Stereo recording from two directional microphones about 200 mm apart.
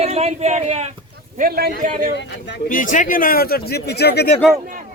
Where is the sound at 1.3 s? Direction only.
50° right (ahead or behind).